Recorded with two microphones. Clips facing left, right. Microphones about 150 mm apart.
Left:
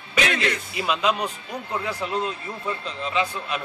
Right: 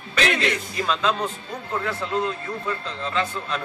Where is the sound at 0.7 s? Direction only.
10° left (ahead or behind).